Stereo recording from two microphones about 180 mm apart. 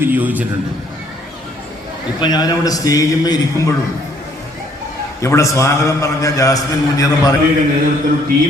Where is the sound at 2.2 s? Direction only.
20° left (ahead or behind).